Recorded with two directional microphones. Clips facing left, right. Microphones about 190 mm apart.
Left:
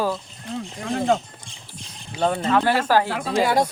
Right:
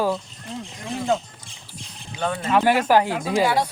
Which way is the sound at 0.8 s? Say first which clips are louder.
Left 2 dB; 60° left (ahead or behind).